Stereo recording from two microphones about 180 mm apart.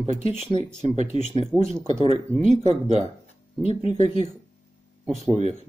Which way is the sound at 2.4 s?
40° right (ahead or behind).